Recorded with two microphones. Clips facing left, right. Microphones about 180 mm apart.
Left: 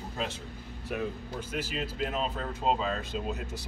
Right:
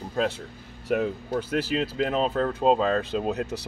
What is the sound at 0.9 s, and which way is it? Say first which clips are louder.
Speech: right 9 dB; 70° right (ahead or behind).